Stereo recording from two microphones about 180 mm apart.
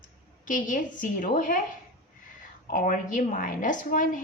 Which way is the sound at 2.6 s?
45° left (ahead or behind).